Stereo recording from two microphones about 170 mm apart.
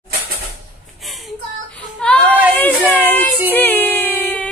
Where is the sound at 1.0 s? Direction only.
Centre (ahead or behind).